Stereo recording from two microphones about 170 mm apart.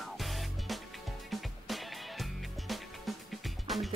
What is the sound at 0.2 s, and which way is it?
Music, centre (ahead or behind).